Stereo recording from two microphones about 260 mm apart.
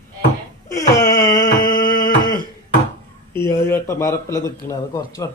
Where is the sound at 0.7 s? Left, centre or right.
Centre.